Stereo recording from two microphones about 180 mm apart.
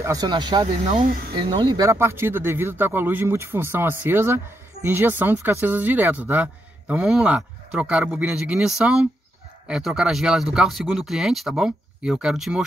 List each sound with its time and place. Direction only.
0.0 s speech: 20° right (ahead or behind)
0.7 s speech: 40° right (ahead or behind)
1.3 s speech: 25° right (ahead or behind); by 12.6 s 5° right (ahead or behind)